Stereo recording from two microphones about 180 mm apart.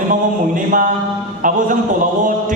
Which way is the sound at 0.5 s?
45° right (ahead or behind).